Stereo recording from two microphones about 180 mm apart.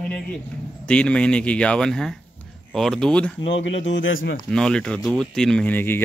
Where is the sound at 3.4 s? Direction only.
90° left.